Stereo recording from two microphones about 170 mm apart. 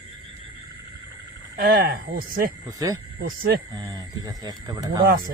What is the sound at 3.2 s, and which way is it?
Speech, 65° right (ahead or behind).